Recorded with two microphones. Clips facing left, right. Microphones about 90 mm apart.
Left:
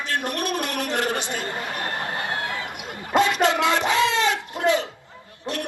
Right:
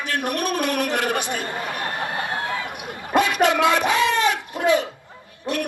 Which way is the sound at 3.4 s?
20° left (ahead or behind).